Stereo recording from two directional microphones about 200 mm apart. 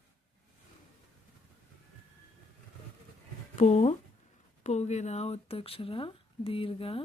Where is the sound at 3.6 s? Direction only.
35° left (ahead or behind).